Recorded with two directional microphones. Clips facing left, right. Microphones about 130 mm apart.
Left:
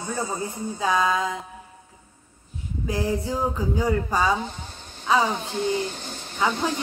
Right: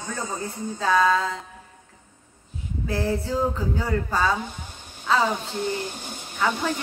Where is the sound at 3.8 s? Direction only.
15° left (ahead or behind).